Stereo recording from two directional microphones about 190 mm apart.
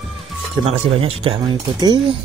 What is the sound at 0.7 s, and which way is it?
Speech, 30° right (ahead or behind).